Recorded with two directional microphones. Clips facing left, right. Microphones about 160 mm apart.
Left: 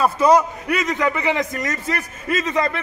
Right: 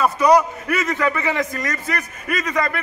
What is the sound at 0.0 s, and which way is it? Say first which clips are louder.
A man's voice: even; 25° left (ahead or behind).